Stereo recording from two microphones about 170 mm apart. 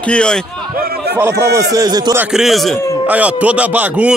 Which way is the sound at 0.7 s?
65° right (ahead or behind).